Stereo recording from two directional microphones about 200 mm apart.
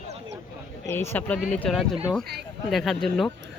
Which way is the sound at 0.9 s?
10° left (ahead or behind).